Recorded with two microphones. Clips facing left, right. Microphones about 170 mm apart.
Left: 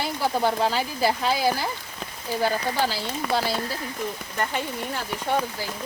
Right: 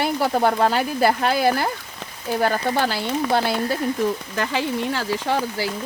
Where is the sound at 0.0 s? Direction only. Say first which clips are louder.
Right 4 dB; 60° right (ahead or behind).